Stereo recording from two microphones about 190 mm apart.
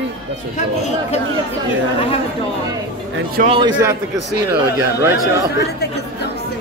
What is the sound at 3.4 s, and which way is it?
Speech, 30° right (ahead or behind).